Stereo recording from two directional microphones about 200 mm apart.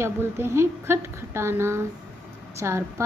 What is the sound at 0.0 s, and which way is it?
A woman's voice, 10° right (ahead or behind).